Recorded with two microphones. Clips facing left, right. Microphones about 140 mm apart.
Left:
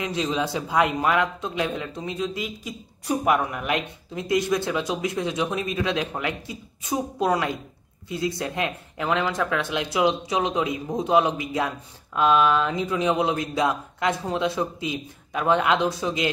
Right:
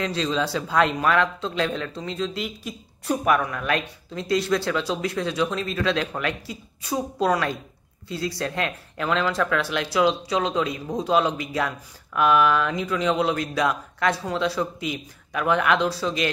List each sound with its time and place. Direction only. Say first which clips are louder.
0.0 s a man's voice: right 1 dB; 15° left (ahead or behind)